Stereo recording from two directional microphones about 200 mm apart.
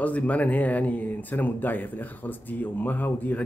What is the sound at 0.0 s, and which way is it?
Speech, 5° left (ahead or behind).